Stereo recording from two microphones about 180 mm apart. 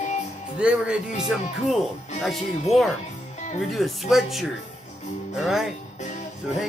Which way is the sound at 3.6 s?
Centre (ahead or behind).